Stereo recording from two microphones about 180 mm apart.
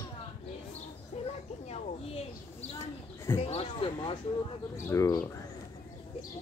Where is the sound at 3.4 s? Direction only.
30° left (ahead or behind).